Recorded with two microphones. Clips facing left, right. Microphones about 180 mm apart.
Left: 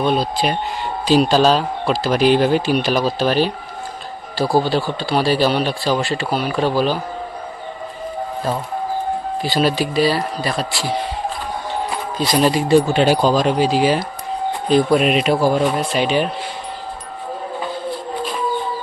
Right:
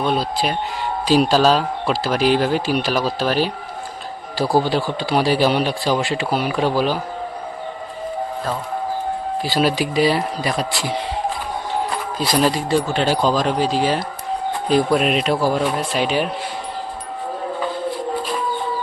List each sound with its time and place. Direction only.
0.0 s speech: centre (ahead or behind)
4.5 s a man's voice: 15° right (ahead or behind)
9.4 s a man's voice: 5° right (ahead or behind)
12.1 s speech: centre (ahead or behind)
12.6 s speech: 15° left (ahead or behind)
13.2 s speech: centre (ahead or behind)
14.7 s speech: 5° right (ahead or behind)